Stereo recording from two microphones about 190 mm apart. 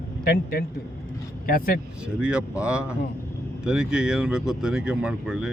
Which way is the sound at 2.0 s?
5° right (ahead or behind).